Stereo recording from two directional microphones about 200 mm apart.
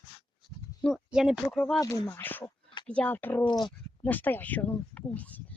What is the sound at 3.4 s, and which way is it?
Speech, 20° left (ahead or behind).